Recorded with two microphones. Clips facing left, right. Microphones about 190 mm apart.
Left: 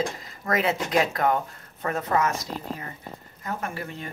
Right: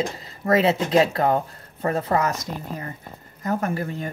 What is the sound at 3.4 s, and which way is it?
Speech, 40° right (ahead or behind).